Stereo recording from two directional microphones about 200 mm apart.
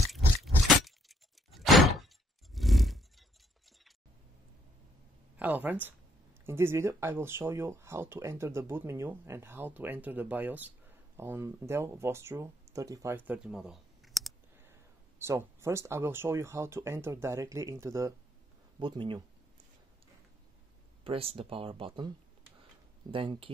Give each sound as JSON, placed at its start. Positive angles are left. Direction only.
{"t": 0.1, "sound": "a sound", "side_deg": 0}
{"t": 5.4, "sound": "speech", "side_deg": -10}
{"t": 14.6, "sound": "speech", "side_deg": -15}
{"t": 21.0, "sound": "speech", "side_deg": -30}
{"t": 23.1, "sound": "speech", "side_deg": -25}